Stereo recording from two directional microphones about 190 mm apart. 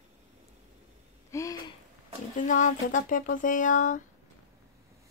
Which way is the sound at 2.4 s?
40° left (ahead or behind).